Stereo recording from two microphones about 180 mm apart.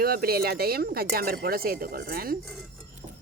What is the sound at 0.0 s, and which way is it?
Speech, 55° right (ahead or behind).